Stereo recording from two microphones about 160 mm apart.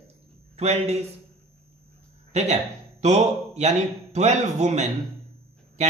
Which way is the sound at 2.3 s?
45° right (ahead or behind).